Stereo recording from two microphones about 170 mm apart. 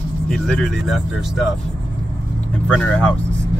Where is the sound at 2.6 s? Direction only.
5° left (ahead or behind).